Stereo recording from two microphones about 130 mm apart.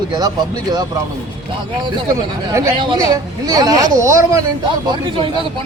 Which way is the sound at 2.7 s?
40° right (ahead or behind).